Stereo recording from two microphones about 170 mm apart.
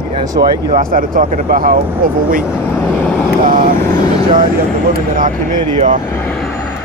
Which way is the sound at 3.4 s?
55° right (ahead or behind).